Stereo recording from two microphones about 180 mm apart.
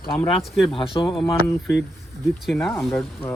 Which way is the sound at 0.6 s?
30° left (ahead or behind).